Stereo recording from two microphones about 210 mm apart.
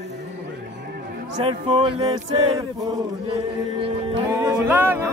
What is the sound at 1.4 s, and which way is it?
Music, 25° right (ahead or behind).